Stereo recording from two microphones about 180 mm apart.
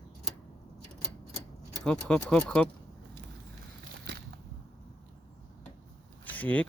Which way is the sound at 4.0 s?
65° right (ahead or behind).